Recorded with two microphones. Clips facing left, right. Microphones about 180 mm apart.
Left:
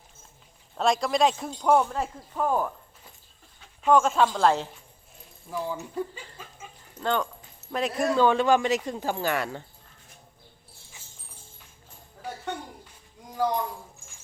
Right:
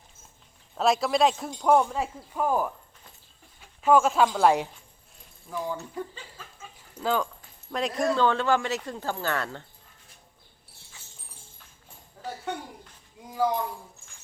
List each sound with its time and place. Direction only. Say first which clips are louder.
0.8 s speech: even; 5° right (ahead or behind)
3.8 s speech: even; 5° right (ahead or behind)
5.5 s speech: even; 10° left (ahead or behind)
7.0 s speech: even; centre (ahead or behind)